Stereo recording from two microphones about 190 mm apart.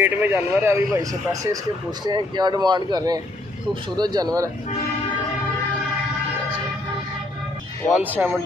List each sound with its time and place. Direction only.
0.0 s speech: 10° right (ahead or behind)
8.0 s speech: 10° right (ahead or behind)